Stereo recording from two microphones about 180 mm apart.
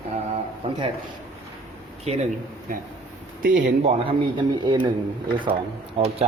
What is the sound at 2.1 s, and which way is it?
Speech, 35° right (ahead or behind).